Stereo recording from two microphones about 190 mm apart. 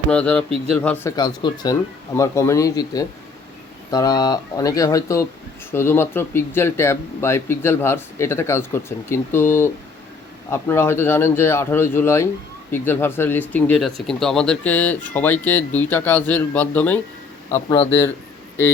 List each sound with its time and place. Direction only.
0.1 s speech: 5° left (ahead or behind)